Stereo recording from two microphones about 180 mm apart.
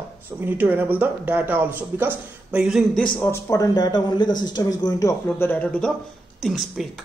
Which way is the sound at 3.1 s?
15° left (ahead or behind).